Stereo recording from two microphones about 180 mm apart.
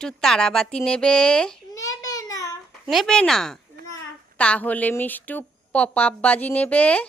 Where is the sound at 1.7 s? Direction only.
20° left (ahead or behind).